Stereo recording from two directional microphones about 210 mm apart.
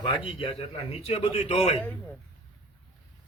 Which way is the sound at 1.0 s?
30° left (ahead or behind).